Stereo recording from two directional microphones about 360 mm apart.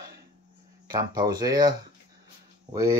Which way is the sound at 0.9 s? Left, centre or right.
Centre.